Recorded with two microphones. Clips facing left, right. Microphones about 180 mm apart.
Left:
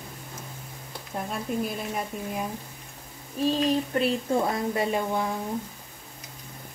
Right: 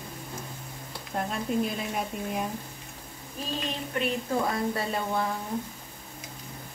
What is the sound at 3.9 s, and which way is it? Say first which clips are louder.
A woman's voice: left 4 dB; 30° left (ahead or behind).